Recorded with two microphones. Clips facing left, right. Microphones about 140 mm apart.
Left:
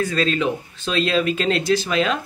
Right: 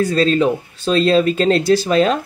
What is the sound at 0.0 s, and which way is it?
Speech, 35° right (ahead or behind).